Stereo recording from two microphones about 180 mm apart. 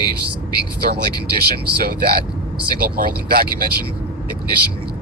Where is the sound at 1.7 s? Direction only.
60° right (ahead or behind).